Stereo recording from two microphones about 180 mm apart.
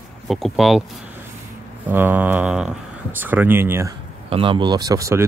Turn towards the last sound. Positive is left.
turn(degrees=-15)  # may be behind; listen again after turning